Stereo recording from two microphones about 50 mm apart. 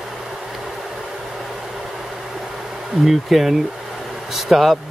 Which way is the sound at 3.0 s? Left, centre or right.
Centre.